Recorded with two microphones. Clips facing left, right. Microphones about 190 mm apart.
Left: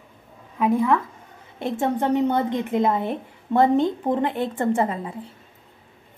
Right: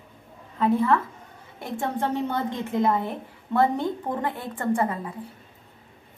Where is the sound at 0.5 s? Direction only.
10° left (ahead or behind).